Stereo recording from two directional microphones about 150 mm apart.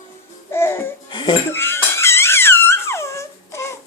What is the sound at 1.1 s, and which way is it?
Dishes, 30° left (ahead or behind).